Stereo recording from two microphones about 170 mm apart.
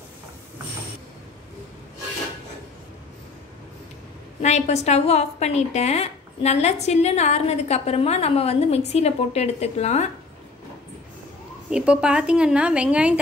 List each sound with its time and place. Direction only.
4.4 s a woman's voice: 40° left (ahead or behind)
11.7 s a woman's voice: 5° right (ahead or behind)